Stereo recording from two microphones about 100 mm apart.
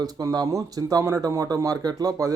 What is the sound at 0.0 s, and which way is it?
Speech, 40° right (ahead or behind).